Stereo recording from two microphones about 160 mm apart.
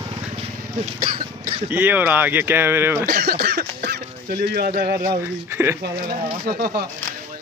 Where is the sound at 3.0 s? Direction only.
75° right (ahead or behind).